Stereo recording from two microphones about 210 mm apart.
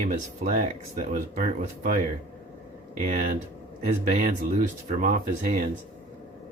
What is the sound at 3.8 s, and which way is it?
Speech, 35° right (ahead or behind).